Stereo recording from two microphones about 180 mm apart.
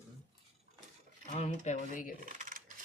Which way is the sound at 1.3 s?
45° left (ahead or behind).